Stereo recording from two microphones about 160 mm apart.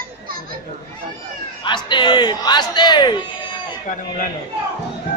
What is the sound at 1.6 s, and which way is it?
Speech, 30° left (ahead or behind).